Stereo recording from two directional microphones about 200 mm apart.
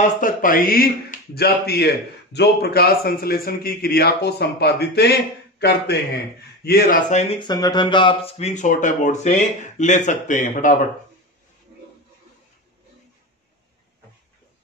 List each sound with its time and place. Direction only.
0.0 s speech: 40° left (ahead or behind)
6.6 s speech: 50° left (ahead or behind)
7.1 s speech: 35° left (ahead or behind)
7.3 s speech: 20° left (ahead or behind); by 10.8 s 40° left (ahead or behind)